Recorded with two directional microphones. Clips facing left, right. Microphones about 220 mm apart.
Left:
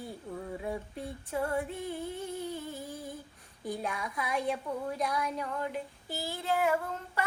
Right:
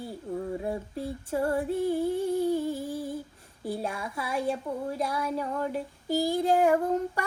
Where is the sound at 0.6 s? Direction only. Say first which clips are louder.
Right 5 dB; 35° right (ahead or behind).